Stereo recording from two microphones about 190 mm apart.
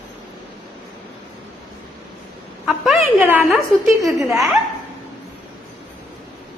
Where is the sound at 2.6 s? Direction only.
Centre (ahead or behind).